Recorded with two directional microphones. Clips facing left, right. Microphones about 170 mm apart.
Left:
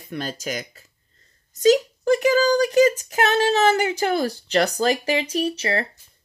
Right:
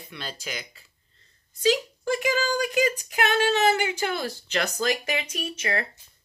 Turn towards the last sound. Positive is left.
turn(degrees=30)  # may be behind; listen again after turning